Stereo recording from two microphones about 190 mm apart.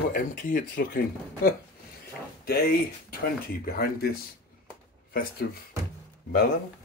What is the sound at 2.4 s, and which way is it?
Speech, 55° left (ahead or behind).